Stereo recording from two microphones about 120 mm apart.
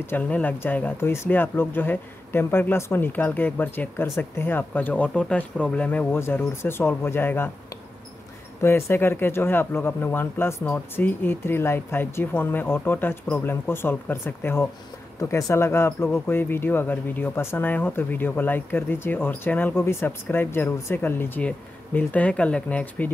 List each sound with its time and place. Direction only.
0.0 s speech: 15° left (ahead or behind)
8.5 s speech: 20° left (ahead or behind)